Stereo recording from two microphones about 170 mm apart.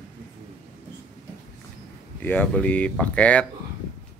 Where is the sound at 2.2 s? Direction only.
10° left (ahead or behind).